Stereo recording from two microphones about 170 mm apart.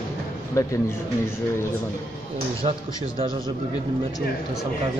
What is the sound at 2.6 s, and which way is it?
Speech, 30° right (ahead or behind).